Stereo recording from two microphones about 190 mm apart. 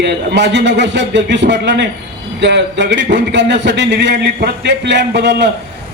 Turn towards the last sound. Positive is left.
turn(degrees=-65)  # may be behind; listen again after turning